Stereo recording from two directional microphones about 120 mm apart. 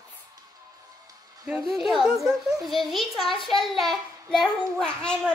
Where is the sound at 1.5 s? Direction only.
Centre (ahead or behind).